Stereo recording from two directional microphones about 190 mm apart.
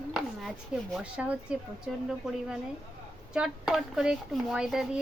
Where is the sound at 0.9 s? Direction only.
5° right (ahead or behind).